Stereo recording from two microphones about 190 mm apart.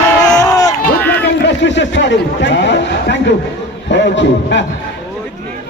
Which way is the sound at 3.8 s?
70° left (ahead or behind).